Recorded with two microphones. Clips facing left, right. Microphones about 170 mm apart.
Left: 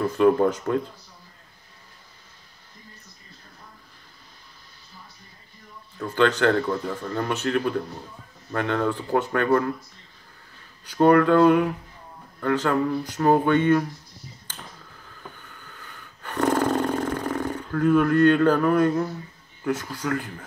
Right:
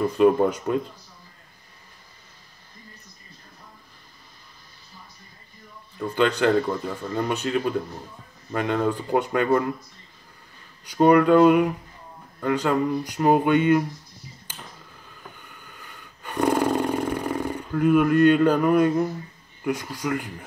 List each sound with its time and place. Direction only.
0.0 s speech: 10° right (ahead or behind)
5.9 s speech: 10° right (ahead or behind)
10.9 s speech: 15° right (ahead or behind)
14.5 s a sound: 10° right (ahead or behind)
15.4 s roar: 15° right (ahead or behind)
19.6 s speech: 15° right (ahead or behind)